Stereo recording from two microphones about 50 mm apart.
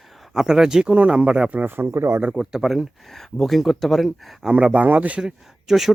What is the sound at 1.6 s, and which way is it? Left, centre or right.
Speech, right.